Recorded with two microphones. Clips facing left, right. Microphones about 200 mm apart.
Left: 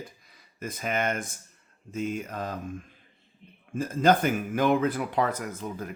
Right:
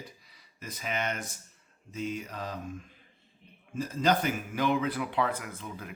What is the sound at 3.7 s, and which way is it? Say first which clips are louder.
Speech: left 5 dB; 50° left (ahead or behind).